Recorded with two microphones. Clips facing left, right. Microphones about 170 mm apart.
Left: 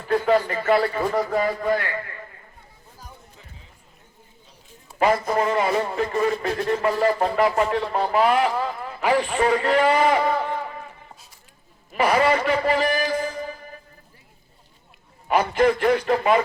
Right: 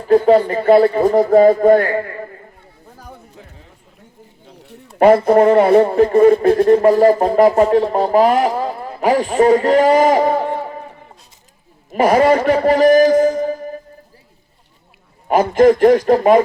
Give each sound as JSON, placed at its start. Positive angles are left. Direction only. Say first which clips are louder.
{"t": 0.1, "sound": "speech", "louder": "right 9 dB", "side_deg": -35}
{"t": 1.0, "sound": "speech", "louder": "right 12 dB", "side_deg": -45}
{"t": 4.4, "sound": "a sound", "louder": "right 15 dB", "side_deg": -70}
{"t": 4.9, "sound": "a man's voice", "louder": "right 11 dB", "side_deg": -55}
{"t": 15.3, "sound": "speech", "louder": "right 8 dB", "side_deg": -45}